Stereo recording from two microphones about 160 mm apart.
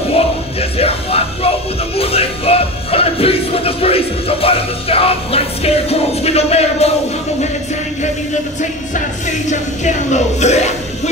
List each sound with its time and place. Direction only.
0.6 s music: 40° left (ahead or behind)
9.5 s speech: 45° left (ahead or behind)